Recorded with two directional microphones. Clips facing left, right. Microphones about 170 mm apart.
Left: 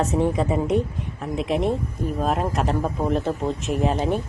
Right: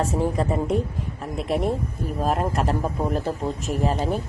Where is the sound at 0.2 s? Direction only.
Centre (ahead or behind).